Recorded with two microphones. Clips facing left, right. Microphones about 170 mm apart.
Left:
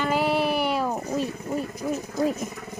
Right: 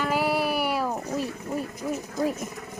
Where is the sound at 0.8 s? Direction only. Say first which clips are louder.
Left 2 dB; 10° left (ahead or behind).